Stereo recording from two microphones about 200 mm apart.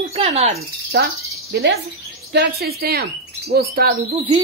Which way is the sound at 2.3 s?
55° right (ahead or behind).